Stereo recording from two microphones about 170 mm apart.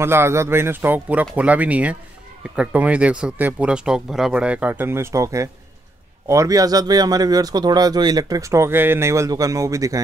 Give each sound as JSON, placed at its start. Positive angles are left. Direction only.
{"t": 0.0, "sound": "a man's voice", "side_deg": -15}